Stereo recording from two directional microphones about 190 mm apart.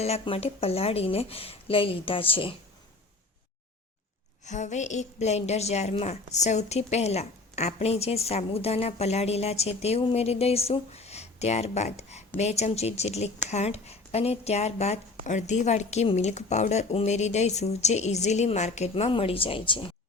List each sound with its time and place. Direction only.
0.0 s a woman's voice: 35° left (ahead or behind)
4.4 s a woman's voice: 40° left (ahead or behind)